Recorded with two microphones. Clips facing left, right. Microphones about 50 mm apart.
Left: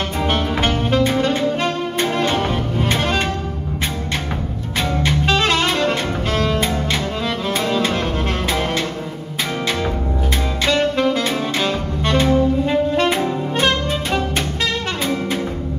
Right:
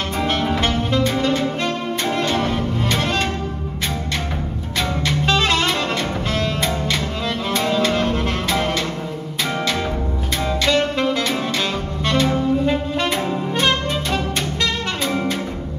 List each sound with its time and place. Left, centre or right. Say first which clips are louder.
0.2 s music: even; centre
5.0 s jazz: left 1 dB; centre
5.4 s saxophone: left 1 dB; centre
5.8 s bowed string instrument: left 3 dB; left
7.7 s music: right 3 dB; left
10.6 s saxophone: left 2 dB; centre
12.9 s music: left 3 dB; centre